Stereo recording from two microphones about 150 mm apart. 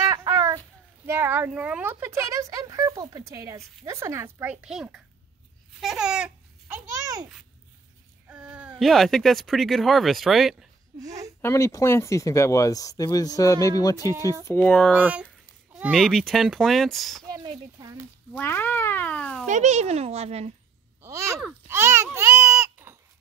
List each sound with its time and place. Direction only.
0.0 s babbling: 20° right (ahead or behind)
1.0 s speech: 15° right (ahead or behind)
6.7 s a sound: 25° right (ahead or behind)
8.3 s speech: 5° right (ahead or behind)
11.0 s a sound: 25° right (ahead or behind)
11.4 s speech: 20° left (ahead or behind)
14.4 s speech: 15° left (ahead or behind)
14.9 s speech: 10° right (ahead or behind)
17.3 s a sound: 25° right (ahead or behind)
18.3 s cat: 15° left (ahead or behind)
19.4 s a child's voice: 50° right (ahead or behind)
21.0 s a sound: 20° right (ahead or behind)
21.6 s speech: 15° right (ahead or behind)